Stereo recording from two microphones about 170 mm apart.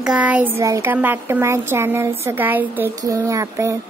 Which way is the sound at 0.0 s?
5° right (ahead or behind).